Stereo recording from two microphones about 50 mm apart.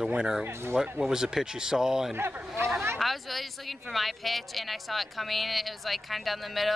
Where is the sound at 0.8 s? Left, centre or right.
Centre.